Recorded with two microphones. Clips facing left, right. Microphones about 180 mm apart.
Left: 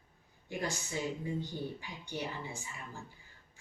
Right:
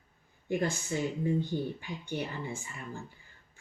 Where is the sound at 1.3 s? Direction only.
55° right (ahead or behind).